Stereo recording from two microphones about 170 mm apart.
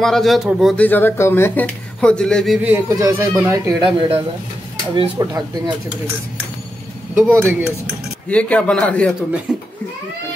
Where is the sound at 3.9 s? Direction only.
35° right (ahead or behind).